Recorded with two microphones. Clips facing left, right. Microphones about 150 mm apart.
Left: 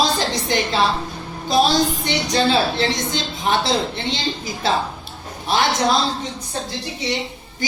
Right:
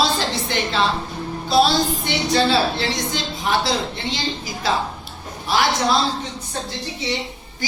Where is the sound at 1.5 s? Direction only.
15° left (ahead or behind).